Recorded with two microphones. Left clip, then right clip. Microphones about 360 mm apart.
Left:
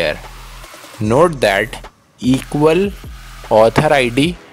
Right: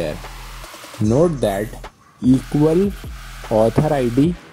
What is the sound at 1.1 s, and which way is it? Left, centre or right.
Speech, left.